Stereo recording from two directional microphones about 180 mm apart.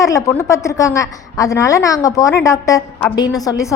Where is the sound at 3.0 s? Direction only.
5° left (ahead or behind).